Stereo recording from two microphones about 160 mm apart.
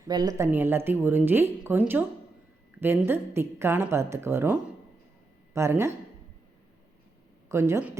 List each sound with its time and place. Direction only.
0.1 s a woman's voice: 25° right (ahead or behind)
5.5 s a woman's voice: 15° right (ahead or behind)
7.4 s speech: 15° right (ahead or behind)